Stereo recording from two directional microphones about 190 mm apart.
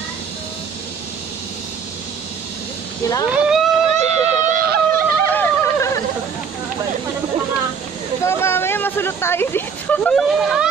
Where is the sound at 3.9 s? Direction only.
35° right (ahead or behind).